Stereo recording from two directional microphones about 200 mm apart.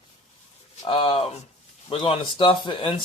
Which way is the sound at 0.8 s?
25° left (ahead or behind).